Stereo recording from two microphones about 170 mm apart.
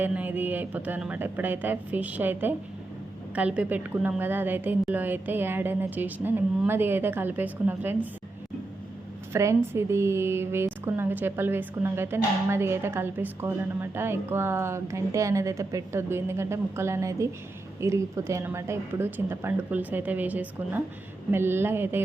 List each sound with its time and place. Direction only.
0.0 s a woman's voice: 10° right (ahead or behind)
9.3 s a woman's voice: 15° right (ahead or behind)